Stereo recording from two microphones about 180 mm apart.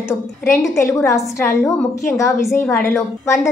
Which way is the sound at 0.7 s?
15° left (ahead or behind).